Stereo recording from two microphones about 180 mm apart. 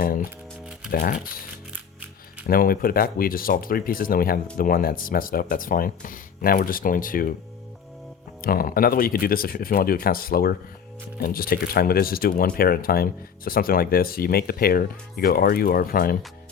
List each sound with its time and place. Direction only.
0.0 s speech: 50° left (ahead or behind)
2.5 s speech: 55° left (ahead or behind)
8.4 s speech: 55° left (ahead or behind)